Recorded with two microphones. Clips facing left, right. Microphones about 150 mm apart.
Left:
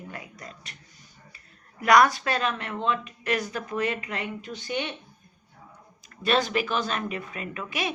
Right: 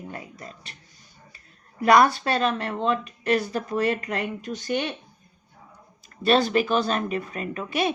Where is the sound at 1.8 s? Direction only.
30° right (ahead or behind); by 4.9 s 45° right (ahead or behind).